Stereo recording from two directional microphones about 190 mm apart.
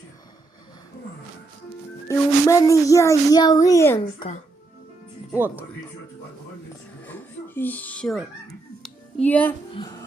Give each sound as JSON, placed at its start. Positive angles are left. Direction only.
{"t": 2.0, "sound": "speech", "side_deg": 15}
{"t": 5.3, "sound": "speech", "side_deg": -10}
{"t": 7.0, "sound": "a sound", "side_deg": 10}